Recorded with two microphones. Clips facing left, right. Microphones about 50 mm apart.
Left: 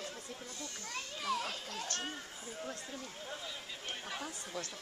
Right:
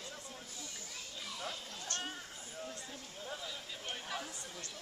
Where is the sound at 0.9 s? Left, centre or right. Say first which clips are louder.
Left 10 dB; left.